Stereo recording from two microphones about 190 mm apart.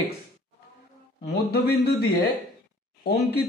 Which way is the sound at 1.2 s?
55° left (ahead or behind).